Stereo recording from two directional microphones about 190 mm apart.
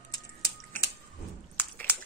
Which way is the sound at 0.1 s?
20° left (ahead or behind).